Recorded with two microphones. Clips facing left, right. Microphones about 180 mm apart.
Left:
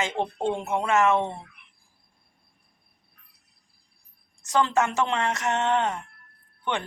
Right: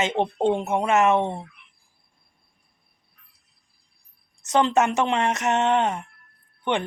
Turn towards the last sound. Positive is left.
turn(degrees=-20)  # may be behind; listen again after turning